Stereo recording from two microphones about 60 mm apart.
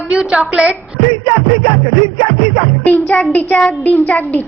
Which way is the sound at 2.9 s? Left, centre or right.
Left.